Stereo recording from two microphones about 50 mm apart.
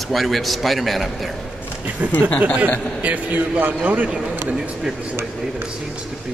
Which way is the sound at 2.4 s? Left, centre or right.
Right.